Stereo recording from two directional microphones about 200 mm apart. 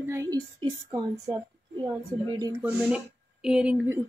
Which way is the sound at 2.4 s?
15° right (ahead or behind).